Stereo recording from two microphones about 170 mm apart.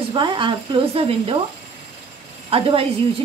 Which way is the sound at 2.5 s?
35° right (ahead or behind).